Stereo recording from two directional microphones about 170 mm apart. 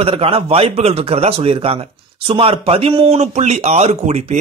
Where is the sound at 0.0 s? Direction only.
35° right (ahead or behind).